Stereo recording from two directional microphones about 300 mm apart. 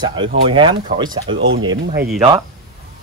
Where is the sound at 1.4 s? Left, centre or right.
Right.